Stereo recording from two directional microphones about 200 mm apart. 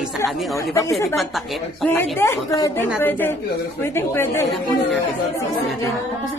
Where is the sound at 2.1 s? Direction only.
10° left (ahead or behind).